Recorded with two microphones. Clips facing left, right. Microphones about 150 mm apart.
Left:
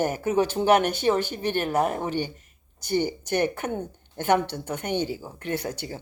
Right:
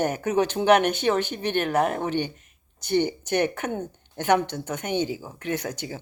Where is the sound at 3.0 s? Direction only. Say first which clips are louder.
Right 1 dB; 20° right (ahead or behind).